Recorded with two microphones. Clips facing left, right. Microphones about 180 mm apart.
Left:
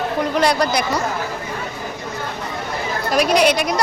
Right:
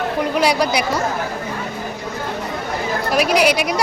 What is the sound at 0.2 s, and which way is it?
Speech, 10° right (ahead or behind).